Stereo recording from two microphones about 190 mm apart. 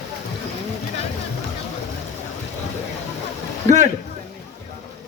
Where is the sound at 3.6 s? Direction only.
40° right (ahead or behind).